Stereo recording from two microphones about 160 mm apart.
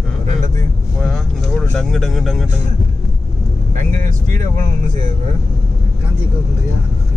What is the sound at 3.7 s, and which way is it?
Speech, 50° right (ahead or behind).